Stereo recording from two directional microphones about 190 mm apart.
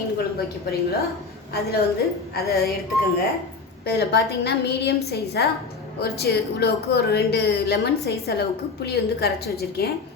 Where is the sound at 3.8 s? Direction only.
60° left (ahead or behind).